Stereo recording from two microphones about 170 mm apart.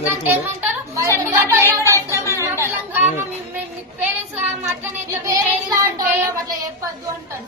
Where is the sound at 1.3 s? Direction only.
15° right (ahead or behind).